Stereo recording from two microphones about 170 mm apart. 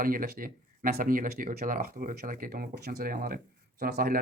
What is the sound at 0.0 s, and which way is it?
Speech, 55° right (ahead or behind).